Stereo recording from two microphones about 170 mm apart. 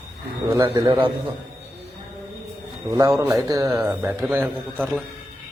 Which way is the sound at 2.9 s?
20° right (ahead or behind).